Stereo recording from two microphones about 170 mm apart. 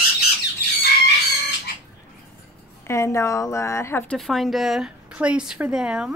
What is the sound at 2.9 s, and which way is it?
Speech, 15° left (ahead or behind).